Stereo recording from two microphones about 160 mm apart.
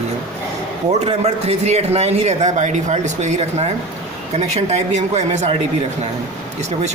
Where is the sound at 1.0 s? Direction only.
40° right (ahead or behind).